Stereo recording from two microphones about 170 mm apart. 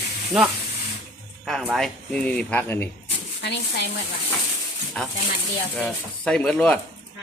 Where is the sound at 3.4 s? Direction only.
90° left.